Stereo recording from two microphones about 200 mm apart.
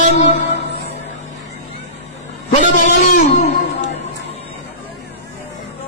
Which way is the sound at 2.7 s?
40° left (ahead or behind).